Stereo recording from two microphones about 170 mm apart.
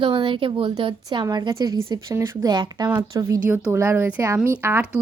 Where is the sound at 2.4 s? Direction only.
25° right (ahead or behind).